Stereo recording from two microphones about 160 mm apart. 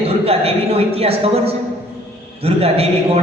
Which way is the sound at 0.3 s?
40° right (ahead or behind).